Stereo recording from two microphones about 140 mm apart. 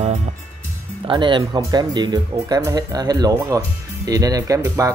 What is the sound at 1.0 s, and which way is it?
Speech, 35° right (ahead or behind).